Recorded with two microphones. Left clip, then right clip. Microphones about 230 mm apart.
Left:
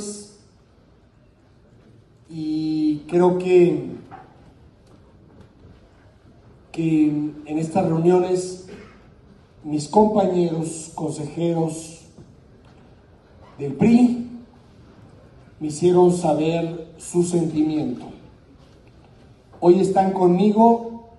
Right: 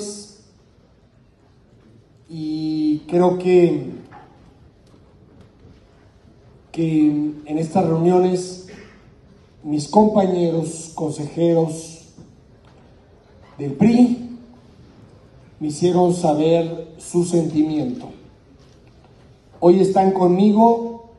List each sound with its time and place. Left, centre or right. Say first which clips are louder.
2.5 s mantra: right 1 dB; right
7.0 s a man's voice: right 5 dB; right
9.7 s a man's voice: right 1 dB; right
13.6 s a man's voice: right 1 dB; right
15.8 s a man's voice: left 1 dB; right
19.6 s a man's voice: right 2 dB; right